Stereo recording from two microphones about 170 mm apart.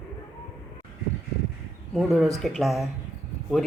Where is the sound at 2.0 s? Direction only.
Centre (ahead or behind).